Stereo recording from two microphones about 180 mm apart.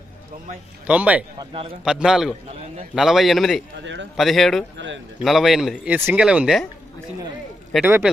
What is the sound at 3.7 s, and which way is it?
Speech, 90° right.